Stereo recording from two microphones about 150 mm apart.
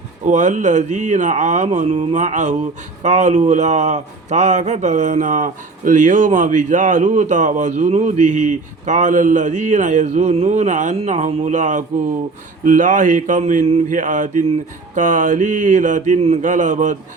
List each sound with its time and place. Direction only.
0.3 s a man's voice: 55° right (ahead or behind)
11.3 s mantra: 45° right (ahead or behind)